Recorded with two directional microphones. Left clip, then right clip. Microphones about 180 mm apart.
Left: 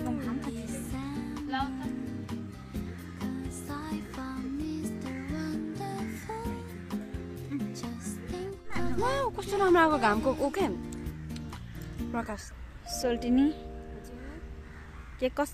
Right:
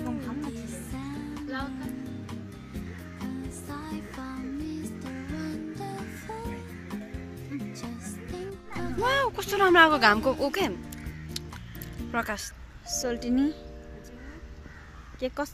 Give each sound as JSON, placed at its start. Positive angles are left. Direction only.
{"t": 0.0, "sound": "music", "side_deg": 0}
{"t": 2.7, "sound": "music", "side_deg": 0}
{"t": 12.0, "sound": "music", "side_deg": 0}
{"t": 12.9, "sound": "speech", "side_deg": 0}
{"t": 15.1, "sound": "speech", "side_deg": 5}